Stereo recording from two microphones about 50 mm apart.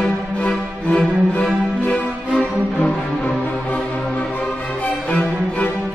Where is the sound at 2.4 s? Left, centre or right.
Left.